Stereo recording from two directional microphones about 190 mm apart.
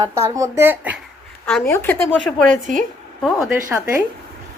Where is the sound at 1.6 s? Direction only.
10° left (ahead or behind).